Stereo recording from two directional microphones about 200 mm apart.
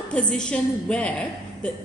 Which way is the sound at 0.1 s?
5° left (ahead or behind).